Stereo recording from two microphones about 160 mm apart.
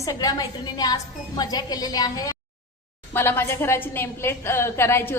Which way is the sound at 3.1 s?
15° left (ahead or behind).